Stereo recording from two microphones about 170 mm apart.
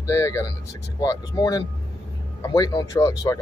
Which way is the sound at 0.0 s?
15° left (ahead or behind).